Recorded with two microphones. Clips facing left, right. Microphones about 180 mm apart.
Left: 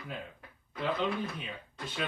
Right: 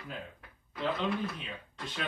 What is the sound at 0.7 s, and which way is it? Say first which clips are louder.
Speech: even; centre (ahead or behind).